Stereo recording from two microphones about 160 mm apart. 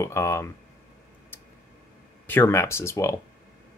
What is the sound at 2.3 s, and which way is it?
Speech, 15° left (ahead or behind).